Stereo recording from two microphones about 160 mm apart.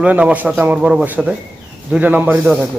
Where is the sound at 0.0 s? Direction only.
5° right (ahead or behind).